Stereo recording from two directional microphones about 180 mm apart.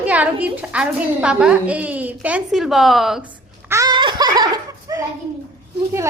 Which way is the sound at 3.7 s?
20° right (ahead or behind).